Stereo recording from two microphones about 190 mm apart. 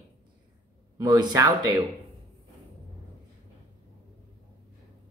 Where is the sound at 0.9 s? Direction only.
20° right (ahead or behind).